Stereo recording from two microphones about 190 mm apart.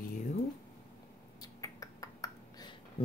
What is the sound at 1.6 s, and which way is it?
Finger snapping, 15° left (ahead or behind).